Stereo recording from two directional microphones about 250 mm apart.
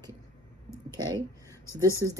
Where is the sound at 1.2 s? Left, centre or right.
Centre.